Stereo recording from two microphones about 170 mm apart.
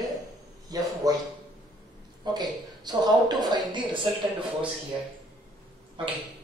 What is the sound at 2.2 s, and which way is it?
Speech, 25° right (ahead or behind).